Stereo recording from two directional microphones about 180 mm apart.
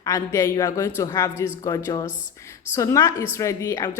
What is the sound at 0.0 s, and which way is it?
A woman's voice, 15° left (ahead or behind).